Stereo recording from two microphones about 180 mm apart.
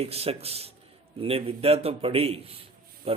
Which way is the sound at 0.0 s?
35° right (ahead or behind).